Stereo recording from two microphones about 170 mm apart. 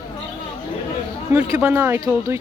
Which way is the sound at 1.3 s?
15° right (ahead or behind).